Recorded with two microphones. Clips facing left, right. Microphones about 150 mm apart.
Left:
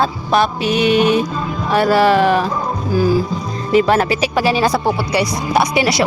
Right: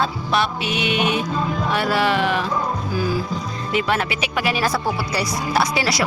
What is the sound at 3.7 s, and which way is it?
Speech, 40° left (ahead or behind).